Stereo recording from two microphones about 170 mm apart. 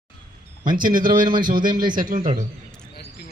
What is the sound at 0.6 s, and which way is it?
Speech, 55° right (ahead or behind).